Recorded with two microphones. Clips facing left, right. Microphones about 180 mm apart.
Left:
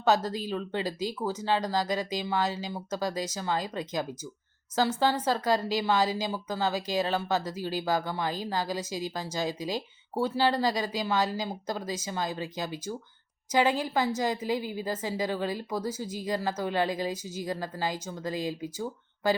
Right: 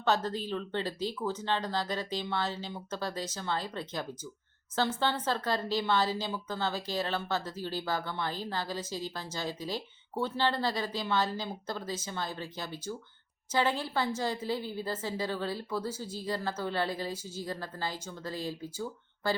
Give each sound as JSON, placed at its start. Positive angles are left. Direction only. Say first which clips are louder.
{"t": 0.0, "sound": "speech", "louder": "left 4 dB", "side_deg": 10}